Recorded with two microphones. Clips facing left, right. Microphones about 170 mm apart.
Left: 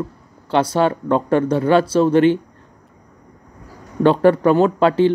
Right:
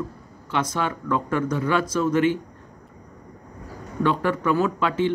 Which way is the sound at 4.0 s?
30° left (ahead or behind).